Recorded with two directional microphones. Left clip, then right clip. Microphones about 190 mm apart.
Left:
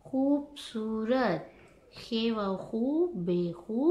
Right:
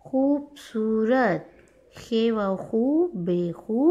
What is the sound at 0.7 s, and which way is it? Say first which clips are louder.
Speech: right 8 dB; 30° right (ahead or behind).